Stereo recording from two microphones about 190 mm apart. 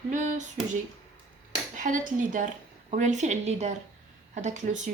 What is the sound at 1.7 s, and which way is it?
Speech, 45° right (ahead or behind).